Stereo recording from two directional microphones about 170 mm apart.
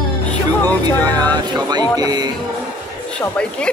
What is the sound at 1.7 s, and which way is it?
Speech, 25° right (ahead or behind).